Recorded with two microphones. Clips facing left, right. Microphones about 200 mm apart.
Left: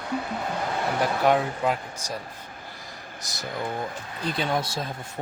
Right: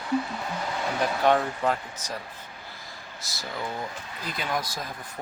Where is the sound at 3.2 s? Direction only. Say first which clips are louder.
Left 2 dB; 20° left (ahead or behind).